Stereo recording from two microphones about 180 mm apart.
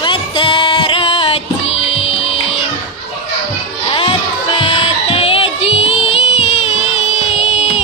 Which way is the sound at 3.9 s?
25° left (ahead or behind).